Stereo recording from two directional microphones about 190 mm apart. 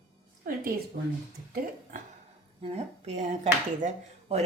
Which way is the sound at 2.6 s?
35° right (ahead or behind).